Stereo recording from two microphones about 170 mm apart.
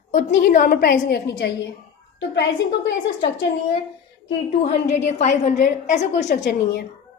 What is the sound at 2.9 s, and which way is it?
Speech, 90° left.